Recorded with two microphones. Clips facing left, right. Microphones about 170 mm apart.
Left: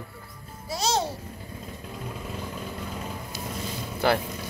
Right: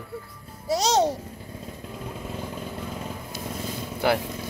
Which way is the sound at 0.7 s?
80° right.